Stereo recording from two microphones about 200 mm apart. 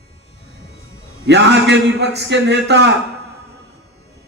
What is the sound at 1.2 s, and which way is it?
A man's voice, 60° right (ahead or behind).